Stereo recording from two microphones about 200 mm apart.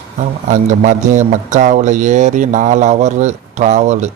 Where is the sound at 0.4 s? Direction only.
40° right (ahead or behind).